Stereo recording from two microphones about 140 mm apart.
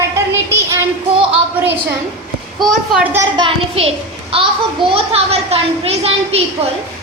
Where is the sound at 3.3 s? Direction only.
40° right (ahead or behind).